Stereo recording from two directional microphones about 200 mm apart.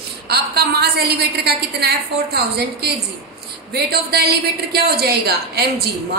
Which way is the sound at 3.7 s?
50° right (ahead or behind).